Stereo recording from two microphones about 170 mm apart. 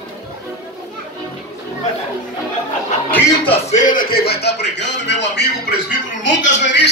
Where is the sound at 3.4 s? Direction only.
45° left (ahead or behind).